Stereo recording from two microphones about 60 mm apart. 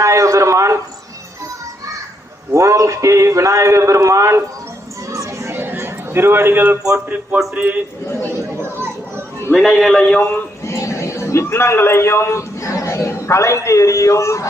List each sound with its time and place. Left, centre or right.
0.0 s a man's voice: right
2.5 s a man's voice: right
5.1 s children playing: right
5.5 s chatter: right
6.9 s speech: centre
8.3 s chatter: right
9.6 s a man's voice: centre
10.0 s a man's voice: centre
10.6 s a man's voice: left